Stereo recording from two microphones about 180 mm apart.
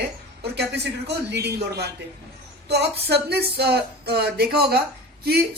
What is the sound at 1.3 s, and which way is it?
Speech, 65° right (ahead or behind).